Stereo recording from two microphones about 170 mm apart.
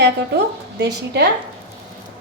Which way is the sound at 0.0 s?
80° right.